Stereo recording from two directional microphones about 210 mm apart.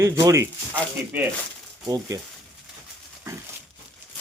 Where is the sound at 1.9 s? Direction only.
15° right (ahead or behind).